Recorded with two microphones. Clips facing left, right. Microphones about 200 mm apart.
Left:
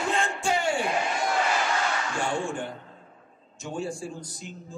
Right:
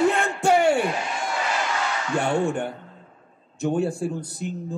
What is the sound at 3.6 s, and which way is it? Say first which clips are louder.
Speech: right 9 dB; 60° right (ahead or behind).